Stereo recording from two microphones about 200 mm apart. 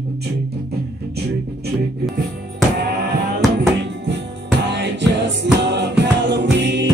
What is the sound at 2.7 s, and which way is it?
Music, 50° right (ahead or behind).